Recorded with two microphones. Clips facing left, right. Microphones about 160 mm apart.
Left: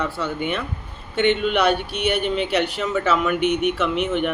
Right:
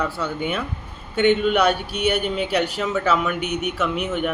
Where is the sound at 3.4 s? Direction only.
40° right (ahead or behind).